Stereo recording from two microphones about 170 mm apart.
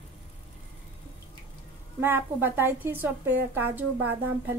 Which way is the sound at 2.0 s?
10° right (ahead or behind).